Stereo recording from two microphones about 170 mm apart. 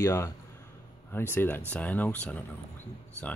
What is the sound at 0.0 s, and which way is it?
Speech, 15° left (ahead or behind).